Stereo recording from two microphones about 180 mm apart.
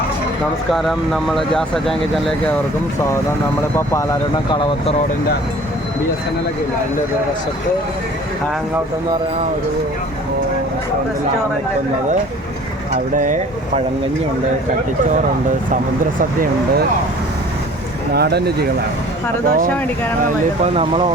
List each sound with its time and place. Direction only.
0.7 s speech: centre (ahead or behind)
3.8 s speech: 15° left (ahead or behind)
13.1 s speech: 45° right (ahead or behind)
18.1 s speech: 65° right (ahead or behind)
19.5 s speech: 50° right (ahead or behind)